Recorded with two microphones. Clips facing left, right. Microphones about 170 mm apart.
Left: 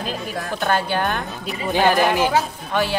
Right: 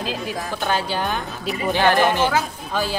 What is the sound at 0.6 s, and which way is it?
Speech, 55° left (ahead or behind).